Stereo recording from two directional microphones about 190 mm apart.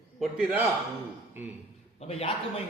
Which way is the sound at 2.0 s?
30° left (ahead or behind).